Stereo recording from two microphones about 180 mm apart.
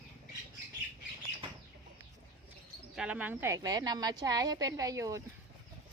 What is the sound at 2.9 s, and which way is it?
Speech, 5° right (ahead or behind).